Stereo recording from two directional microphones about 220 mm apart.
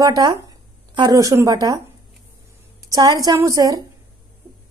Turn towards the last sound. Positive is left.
turn(degrees=-15)  # may be behind; listen again after turning